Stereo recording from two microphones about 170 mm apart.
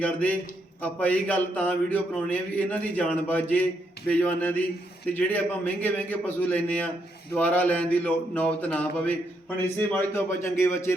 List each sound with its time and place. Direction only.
0.0 s a man's voice: 10° left (ahead or behind)